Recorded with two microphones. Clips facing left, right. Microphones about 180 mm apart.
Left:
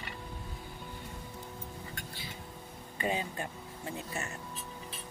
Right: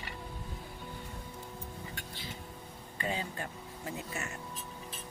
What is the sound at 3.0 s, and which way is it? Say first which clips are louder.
Speech: left 3 dB; 20° left (ahead or behind).